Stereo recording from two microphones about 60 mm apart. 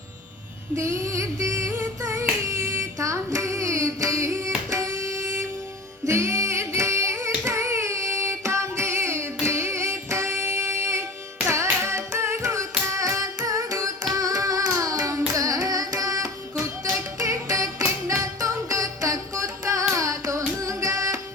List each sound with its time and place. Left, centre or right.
0.8 s music: right
2.0 s child singing: right
6.1 s carnatic music: right
14.1 s carnatic music: right
17.2 s music: right